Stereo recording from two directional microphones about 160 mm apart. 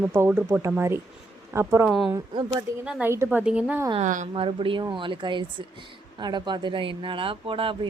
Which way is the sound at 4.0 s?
50° right (ahead or behind).